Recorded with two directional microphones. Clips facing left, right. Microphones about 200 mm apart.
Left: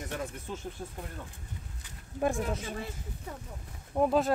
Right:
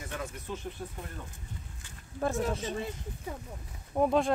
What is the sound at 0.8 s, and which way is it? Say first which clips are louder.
Speech: right 1 dB; 20° left (ahead or behind).